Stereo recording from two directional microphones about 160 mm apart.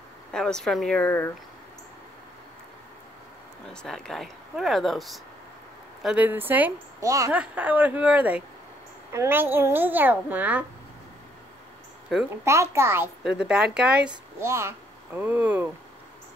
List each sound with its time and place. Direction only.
0.3 s speech: 5° left (ahead or behind)
3.6 s a woman's voice: 5° left (ahead or behind); by 7.3 s 20° right (ahead or behind)
7.3 s a woman's voice: 10° right (ahead or behind)
12.1 s speech: centre (ahead or behind)
12.4 s a woman's voice: 15° right (ahead or behind)
13.2 s speech: 5° right (ahead or behind)
14.4 s speech: 15° right (ahead or behind)